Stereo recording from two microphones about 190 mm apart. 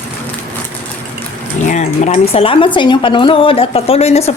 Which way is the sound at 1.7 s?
40° left (ahead or behind).